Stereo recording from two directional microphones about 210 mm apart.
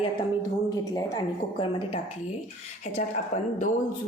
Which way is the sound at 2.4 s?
35° left (ahead or behind).